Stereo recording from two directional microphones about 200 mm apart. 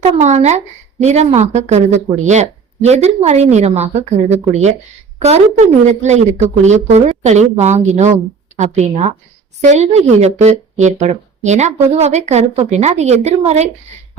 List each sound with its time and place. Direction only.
0.0 s speech: 35° right (ahead or behind)